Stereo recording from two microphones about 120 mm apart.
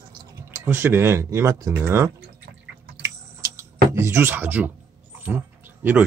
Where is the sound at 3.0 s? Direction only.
25° right (ahead or behind).